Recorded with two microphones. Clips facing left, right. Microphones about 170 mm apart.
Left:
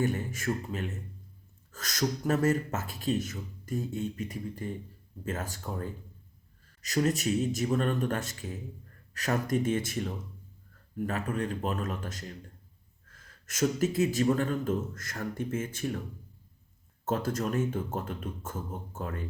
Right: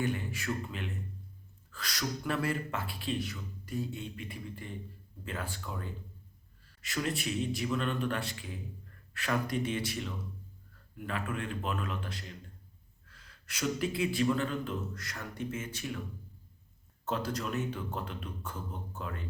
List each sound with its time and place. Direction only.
0.0 s a man's voice: 45° left (ahead or behind)
17.1 s a man's voice: 45° left (ahead or behind)